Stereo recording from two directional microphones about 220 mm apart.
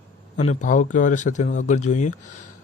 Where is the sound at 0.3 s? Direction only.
35° left (ahead or behind).